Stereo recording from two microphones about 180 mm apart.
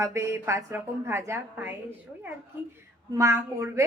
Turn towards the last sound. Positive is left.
turn(degrees=-15)  # may be behind; listen again after turning